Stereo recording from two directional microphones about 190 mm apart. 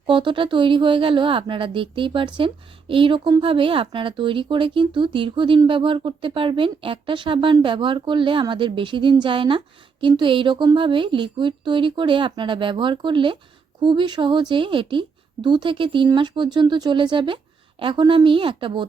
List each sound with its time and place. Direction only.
0.1 s speech: 25° right (ahead or behind)